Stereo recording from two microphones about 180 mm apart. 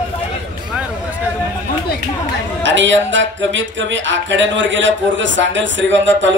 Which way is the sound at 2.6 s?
90° right.